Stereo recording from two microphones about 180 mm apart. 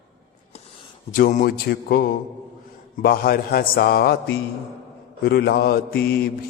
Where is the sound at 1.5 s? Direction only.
60° left (ahead or behind).